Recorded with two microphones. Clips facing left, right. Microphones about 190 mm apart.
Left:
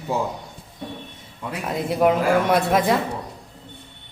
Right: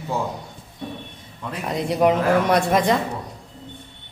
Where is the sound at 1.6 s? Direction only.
5° left (ahead or behind).